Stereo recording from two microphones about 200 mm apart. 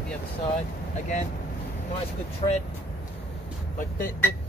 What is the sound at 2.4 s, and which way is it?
Speech, 25° left (ahead or behind).